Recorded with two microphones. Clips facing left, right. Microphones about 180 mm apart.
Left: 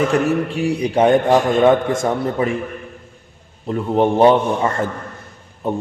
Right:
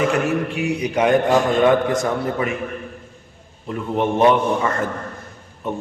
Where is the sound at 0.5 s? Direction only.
35° left (ahead or behind).